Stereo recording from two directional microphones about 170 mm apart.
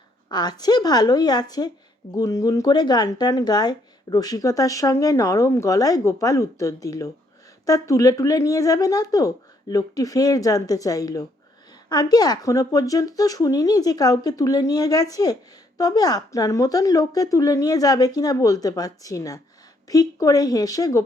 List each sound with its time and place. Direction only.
0.3 s speech: 25° left (ahead or behind)